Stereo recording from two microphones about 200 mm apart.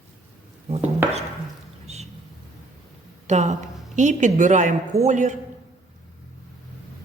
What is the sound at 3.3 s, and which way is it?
A man's voice, 35° right (ahead or behind).